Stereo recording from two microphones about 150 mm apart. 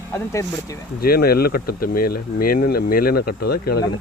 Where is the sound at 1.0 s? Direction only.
90° left.